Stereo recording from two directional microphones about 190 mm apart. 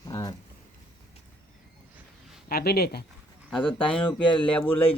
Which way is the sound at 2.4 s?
55° left (ahead or behind).